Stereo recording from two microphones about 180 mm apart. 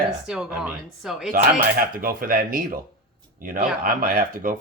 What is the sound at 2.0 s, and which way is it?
Speech, 55° right (ahead or behind).